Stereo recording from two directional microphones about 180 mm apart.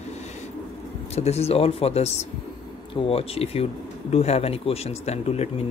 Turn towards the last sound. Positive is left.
turn(degrees=35)  # may be behind; listen again after turning